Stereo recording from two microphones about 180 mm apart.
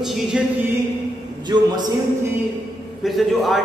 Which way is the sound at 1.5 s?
25° right (ahead or behind).